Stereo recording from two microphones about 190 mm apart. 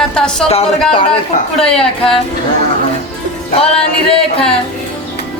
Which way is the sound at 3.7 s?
5° left (ahead or behind).